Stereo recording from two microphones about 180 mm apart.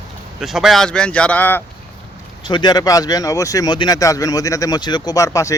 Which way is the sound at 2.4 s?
25° left (ahead or behind).